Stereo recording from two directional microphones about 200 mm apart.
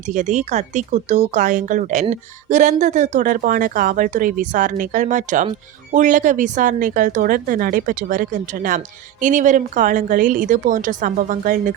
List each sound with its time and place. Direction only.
0.1 s speech: 35° right (ahead or behind)